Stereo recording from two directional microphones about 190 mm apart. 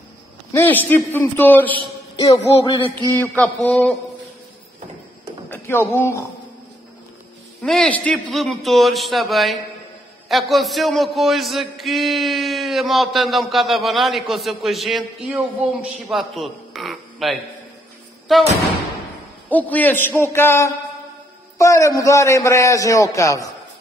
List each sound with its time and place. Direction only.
0.5 s a man's voice: 10° left (ahead or behind)
2.5 s speech: 30° left (ahead or behind)
3.1 s a man's voice: 10° left (ahead or behind)
5.5 s speech: 10° left (ahead or behind)
7.6 s a sound: 5° left (ahead or behind)
19.5 s a man's voice: 10° left (ahead or behind)